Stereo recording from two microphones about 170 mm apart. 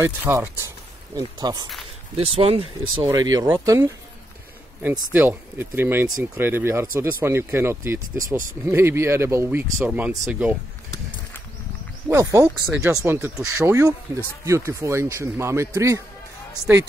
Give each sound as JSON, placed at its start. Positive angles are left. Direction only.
{"t": 0.0, "sound": "speech", "side_deg": -15}
{"t": 2.3, "sound": "speech", "side_deg": -35}
{"t": 3.0, "sound": "speech", "side_deg": -20}
{"t": 5.1, "sound": "speech", "side_deg": -10}
{"t": 12.1, "sound": "speech", "side_deg": -20}